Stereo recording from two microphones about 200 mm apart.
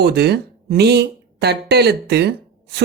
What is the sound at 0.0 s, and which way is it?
Speech, 55° right (ahead or behind).